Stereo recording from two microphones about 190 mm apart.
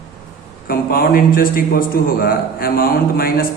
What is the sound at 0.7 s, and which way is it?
A man's voice, 50° left (ahead or behind).